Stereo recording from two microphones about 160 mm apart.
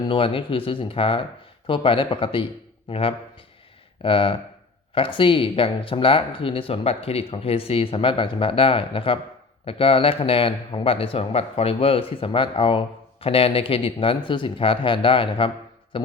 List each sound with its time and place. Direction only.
0.0 s speech: 30° left (ahead or behind)